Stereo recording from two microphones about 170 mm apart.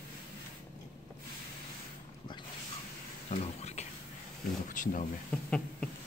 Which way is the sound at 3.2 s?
40° left (ahead or behind).